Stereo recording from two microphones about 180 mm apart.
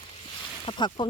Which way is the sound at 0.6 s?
25° left (ahead or behind).